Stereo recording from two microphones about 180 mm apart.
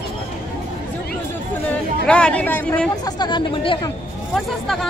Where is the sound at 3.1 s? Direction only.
25° left (ahead or behind).